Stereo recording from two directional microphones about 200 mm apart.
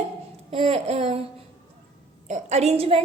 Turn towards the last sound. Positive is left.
turn(degrees=-30)  # may be behind; listen again after turning